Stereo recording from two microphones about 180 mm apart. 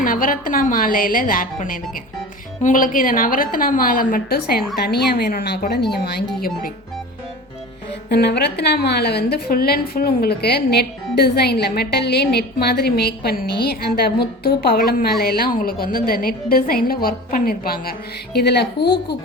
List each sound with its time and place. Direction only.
0.0 s a woman's voice: 50° left (ahead or behind); by 6.2 s 65° left (ahead or behind)
8.1 s a woman's voice: 65° left (ahead or behind)
18.3 s speech: 70° left (ahead or behind)